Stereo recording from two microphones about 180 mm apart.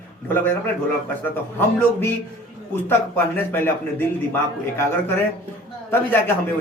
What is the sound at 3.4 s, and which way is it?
Speech, 10° left (ahead or behind).